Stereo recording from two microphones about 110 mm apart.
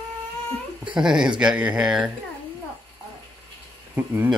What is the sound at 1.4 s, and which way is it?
Speech, 10° right (ahead or behind).